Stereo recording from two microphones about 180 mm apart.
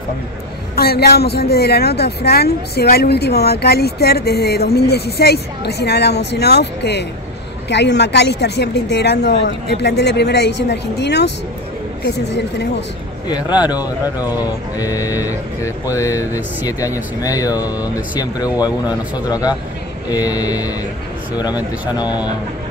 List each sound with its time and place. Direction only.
0.7 s a woman's voice: 60° left (ahead or behind)
13.3 s speech: 25° left (ahead or behind)